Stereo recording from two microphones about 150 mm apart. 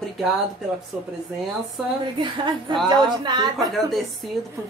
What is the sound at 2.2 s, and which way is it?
A woman's voice, 30° right (ahead or behind).